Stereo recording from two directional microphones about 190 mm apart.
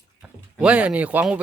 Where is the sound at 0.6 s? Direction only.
5° right (ahead or behind).